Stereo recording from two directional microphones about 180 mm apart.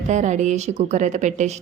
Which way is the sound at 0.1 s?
40° right (ahead or behind).